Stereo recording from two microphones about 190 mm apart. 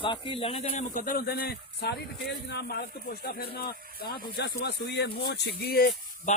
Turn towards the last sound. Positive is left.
turn(degrees=50)  # may be behind; listen again after turning